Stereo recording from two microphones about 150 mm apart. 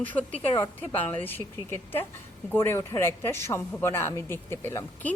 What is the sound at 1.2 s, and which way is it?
Speech, 15° left (ahead or behind).